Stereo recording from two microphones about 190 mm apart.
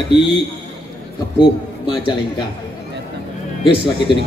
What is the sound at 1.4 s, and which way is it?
Speech, 25° left (ahead or behind).